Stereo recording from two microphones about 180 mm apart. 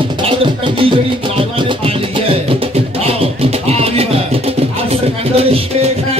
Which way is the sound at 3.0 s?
35° right (ahead or behind).